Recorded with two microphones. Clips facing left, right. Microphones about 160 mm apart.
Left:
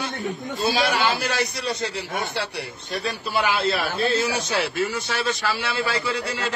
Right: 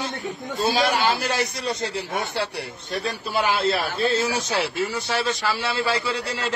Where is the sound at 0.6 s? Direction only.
40° right (ahead or behind).